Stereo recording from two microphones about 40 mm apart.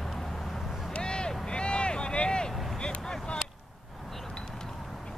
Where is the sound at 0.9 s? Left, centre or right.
Left.